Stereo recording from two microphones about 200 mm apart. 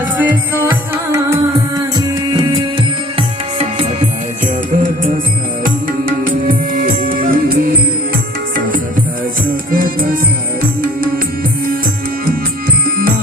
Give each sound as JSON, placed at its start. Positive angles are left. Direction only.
{"t": 0.2, "sound": "music", "side_deg": -10}
{"t": 5.6, "sound": "music", "side_deg": -45}
{"t": 9.7, "sound": "music", "side_deg": -45}